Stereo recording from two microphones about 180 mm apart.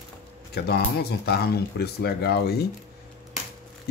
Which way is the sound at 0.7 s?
65° left (ahead or behind).